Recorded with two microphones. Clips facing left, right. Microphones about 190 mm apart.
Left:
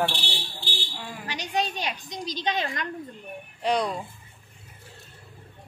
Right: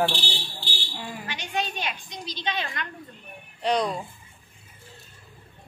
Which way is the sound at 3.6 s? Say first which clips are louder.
Right 1 dB; 10° left (ahead or behind).